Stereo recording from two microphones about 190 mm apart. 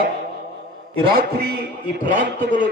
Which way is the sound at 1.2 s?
55° right (ahead or behind).